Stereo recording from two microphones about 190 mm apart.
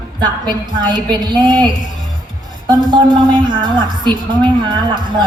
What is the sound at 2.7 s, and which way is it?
A woman's voice, 25° right (ahead or behind).